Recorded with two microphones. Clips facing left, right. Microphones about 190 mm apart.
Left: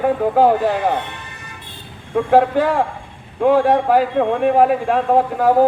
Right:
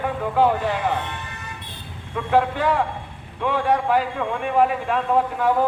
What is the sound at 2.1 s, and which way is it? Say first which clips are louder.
A man's voice: left 7 dB; 45° left (ahead or behind).